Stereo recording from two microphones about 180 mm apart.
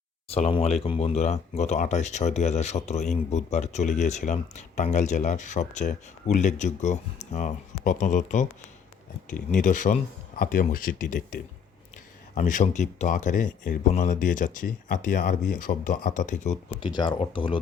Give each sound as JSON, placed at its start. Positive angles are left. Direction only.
{"t": 0.3, "sound": "speech", "side_deg": 35}
{"t": 16.8, "sound": "speech", "side_deg": 25}